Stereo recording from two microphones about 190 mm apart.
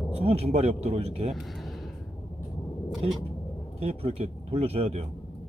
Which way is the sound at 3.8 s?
30° right (ahead or behind).